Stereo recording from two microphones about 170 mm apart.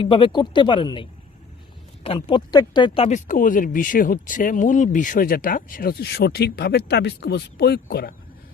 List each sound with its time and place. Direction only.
0.0 s speech: 30° left (ahead or behind)
2.0 s speech: 25° left (ahead or behind); by 8.1 s 70° left (ahead or behind)